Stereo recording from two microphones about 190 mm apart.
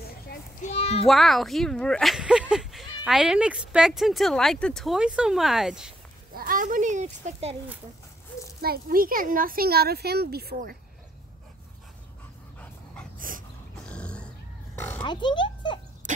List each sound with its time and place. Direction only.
0.0 s children playing: 55° left (ahead or behind)
0.7 s a sound: 30° left (ahead or behind)
1.0 s speech: centre (ahead or behind)
6.3 s a child's voice: 45° right (ahead or behind)
8.5 s speech: 55° right (ahead or behind)
12.5 s dog: 5° left (ahead or behind)
13.8 s a sound: 5° left (ahead or behind)
15.0 s speech: 25° left (ahead or behind)